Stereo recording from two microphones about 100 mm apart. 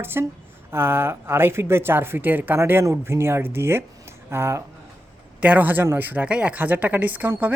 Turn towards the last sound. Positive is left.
turn(degrees=-15)  # may be behind; listen again after turning